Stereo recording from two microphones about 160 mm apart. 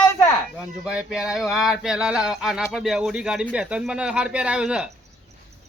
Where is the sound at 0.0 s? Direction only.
15° left (ahead or behind).